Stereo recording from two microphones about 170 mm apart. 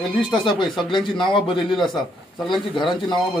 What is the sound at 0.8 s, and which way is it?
Speech, 30° left (ahead or behind).